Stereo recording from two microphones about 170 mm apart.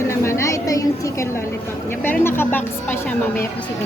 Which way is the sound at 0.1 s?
15° left (ahead or behind).